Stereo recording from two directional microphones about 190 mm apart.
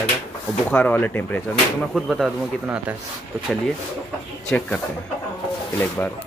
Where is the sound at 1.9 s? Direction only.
5° right (ahead or behind).